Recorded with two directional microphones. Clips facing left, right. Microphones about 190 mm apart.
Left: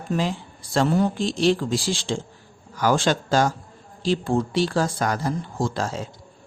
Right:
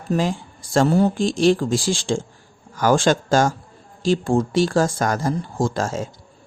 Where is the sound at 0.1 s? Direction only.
45° right (ahead or behind).